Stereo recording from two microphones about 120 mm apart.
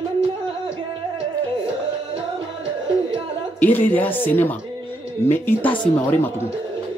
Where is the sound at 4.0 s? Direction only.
15° left (ahead or behind).